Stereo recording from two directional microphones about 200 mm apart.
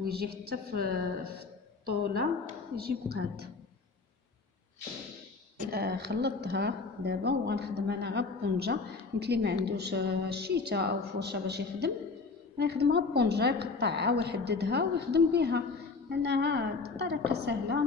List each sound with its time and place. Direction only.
0.0 s a woman's voice: 50° right (ahead or behind)
5.7 s a woman's voice: 55° right (ahead or behind)